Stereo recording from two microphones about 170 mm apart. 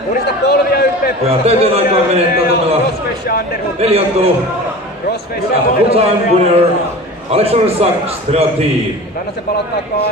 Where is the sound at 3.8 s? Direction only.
35° right (ahead or behind).